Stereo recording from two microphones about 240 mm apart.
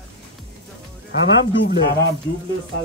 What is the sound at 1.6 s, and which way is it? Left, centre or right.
Speech, left.